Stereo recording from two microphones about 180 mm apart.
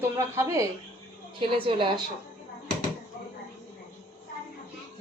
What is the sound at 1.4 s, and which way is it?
Speech, 30° right (ahead or behind).